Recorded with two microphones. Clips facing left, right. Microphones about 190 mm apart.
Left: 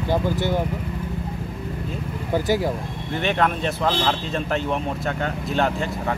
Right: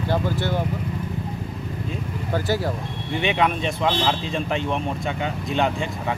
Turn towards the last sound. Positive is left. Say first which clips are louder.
# even
turn(degrees=-15)  # may be behind; listen again after turning